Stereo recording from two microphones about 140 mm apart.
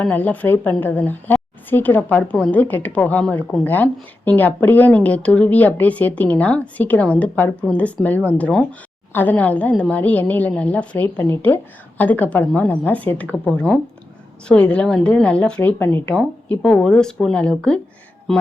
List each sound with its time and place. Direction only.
0.0 s a woman's voice: 10° left (ahead or behind)